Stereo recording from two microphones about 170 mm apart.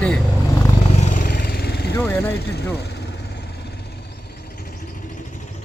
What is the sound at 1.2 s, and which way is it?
Vehicle, 60° left (ahead or behind).